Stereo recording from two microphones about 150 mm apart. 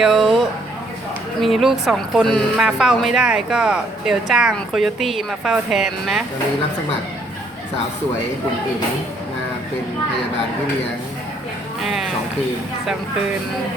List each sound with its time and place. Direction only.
0.0 s a woman's voice: centre (ahead or behind)
11.8 s speech: centre (ahead or behind)